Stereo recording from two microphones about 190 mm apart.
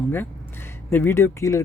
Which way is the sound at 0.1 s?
10° left (ahead or behind).